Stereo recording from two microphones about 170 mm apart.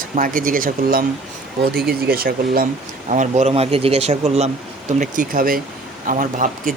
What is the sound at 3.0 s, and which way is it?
Speech, 45° right (ahead or behind).